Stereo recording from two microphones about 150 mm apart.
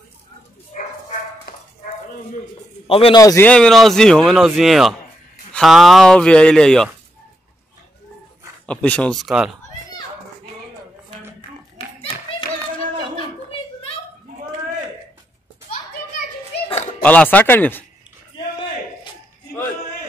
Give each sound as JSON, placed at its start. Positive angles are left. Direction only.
{"t": 0.7, "sound": "bow-wow", "side_deg": 55}
{"t": 2.9, "sound": "a man's voice", "side_deg": 40}
{"t": 3.2, "sound": "a man's voice", "side_deg": 25}
{"t": 3.4, "sound": "speech", "side_deg": 5}
{"t": 8.6, "sound": "speech", "side_deg": 10}
{"t": 11.8, "sound": "clapping", "side_deg": 40}
{"t": 17.0, "sound": "speech", "side_deg": 10}